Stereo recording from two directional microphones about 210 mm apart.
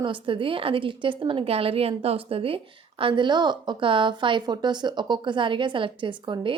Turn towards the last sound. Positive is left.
turn(degrees=-20)  # may be behind; listen again after turning